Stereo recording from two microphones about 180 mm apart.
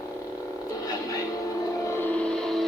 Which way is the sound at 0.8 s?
20° left (ahead or behind).